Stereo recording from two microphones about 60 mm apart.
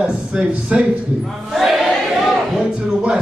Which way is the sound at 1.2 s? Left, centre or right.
Centre.